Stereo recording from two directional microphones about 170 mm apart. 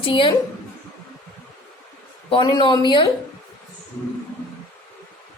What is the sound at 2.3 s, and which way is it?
Speech, 30° left (ahead or behind).